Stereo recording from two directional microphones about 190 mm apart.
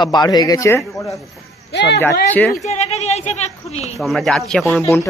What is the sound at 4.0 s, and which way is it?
Speech, centre (ahead or behind).